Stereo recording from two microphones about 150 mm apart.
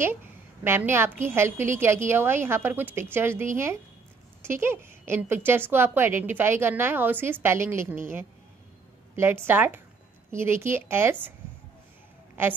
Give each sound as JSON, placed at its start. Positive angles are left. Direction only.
{"t": 0.7, "sound": "a woman's voice", "side_deg": -15}
{"t": 9.1, "sound": "a woman's voice", "side_deg": -15}
{"t": 12.4, "sound": "a woman's voice", "side_deg": -15}